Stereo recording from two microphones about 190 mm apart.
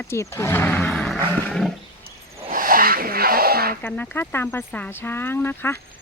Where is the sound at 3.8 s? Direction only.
10° left (ahead or behind).